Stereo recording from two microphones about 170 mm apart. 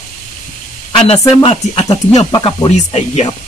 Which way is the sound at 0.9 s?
35° left (ahead or behind).